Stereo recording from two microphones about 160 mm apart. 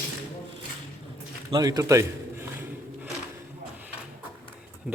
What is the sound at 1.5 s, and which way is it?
Speech, 25° right (ahead or behind).